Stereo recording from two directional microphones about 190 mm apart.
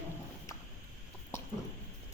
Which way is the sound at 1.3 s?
15° left (ahead or behind).